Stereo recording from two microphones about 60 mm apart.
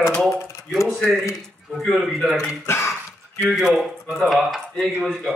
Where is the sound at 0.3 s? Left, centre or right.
Left.